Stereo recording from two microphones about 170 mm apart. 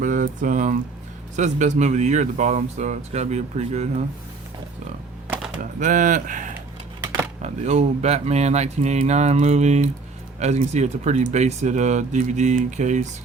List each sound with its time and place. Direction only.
0.0 s speech: 50° right (ahead or behind)
5.8 s speech: 50° right (ahead or behind)